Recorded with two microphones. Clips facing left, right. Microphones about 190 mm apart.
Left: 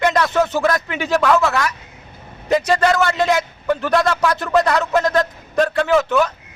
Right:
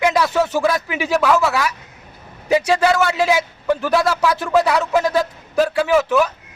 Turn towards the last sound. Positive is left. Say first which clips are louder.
# even
turn(degrees=-5)  # may be behind; listen again after turning